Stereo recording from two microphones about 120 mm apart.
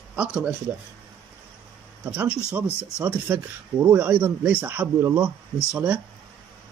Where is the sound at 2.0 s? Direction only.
10° right (ahead or behind).